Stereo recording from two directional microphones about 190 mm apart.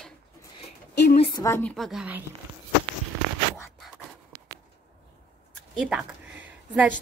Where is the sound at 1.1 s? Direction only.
30° left (ahead or behind).